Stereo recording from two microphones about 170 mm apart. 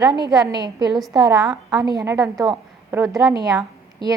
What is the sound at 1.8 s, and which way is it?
A woman's voice, 20° right (ahead or behind).